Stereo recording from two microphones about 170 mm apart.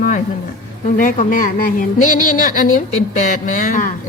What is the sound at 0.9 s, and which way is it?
Speech, 50° left (ahead or behind).